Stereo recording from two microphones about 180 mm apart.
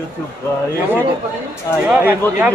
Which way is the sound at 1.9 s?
10° right (ahead or behind).